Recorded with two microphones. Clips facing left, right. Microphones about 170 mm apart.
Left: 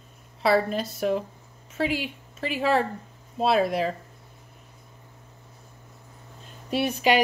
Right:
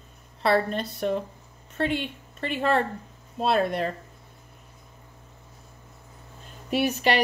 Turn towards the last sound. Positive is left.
turn(degrees=0)  # may be behind; listen again after turning